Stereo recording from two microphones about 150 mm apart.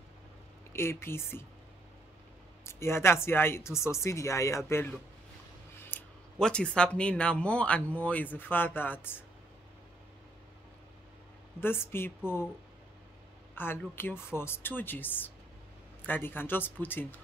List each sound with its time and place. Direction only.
0.7 s speech: 15° left (ahead or behind)
2.6 s speech: 15° left (ahead or behind)
11.6 s speech: 15° left (ahead or behind)
13.6 s speech: 15° left (ahead or behind)